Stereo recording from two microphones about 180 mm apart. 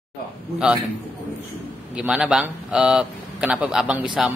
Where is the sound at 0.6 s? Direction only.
5° right (ahead or behind).